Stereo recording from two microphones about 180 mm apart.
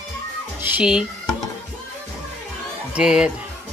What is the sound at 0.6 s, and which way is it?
Speech, 5° right (ahead or behind).